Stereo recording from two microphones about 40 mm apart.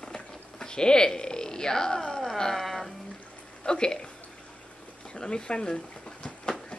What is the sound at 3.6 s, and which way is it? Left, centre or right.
Speech, left.